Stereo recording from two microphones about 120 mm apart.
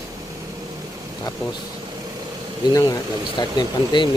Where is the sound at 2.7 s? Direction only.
30° left (ahead or behind).